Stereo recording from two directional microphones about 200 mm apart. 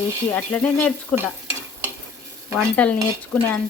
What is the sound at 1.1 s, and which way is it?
Stir, 15° right (ahead or behind).